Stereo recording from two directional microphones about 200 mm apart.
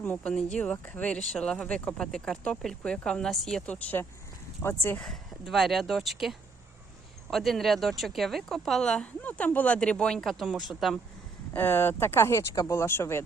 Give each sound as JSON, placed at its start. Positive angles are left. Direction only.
{"t": 0.0, "sound": "a woman's voice", "side_deg": 5}
{"t": 11.5, "sound": "speech", "side_deg": 10}